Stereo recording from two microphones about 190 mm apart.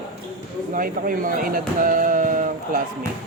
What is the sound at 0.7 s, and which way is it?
Speech, 45° right (ahead or behind).